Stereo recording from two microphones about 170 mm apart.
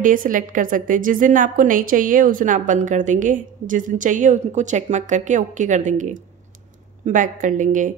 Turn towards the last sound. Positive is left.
turn(degrees=-50)  # may be behind; listen again after turning